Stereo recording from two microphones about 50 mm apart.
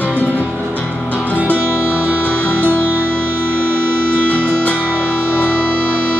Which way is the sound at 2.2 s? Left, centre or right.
Left.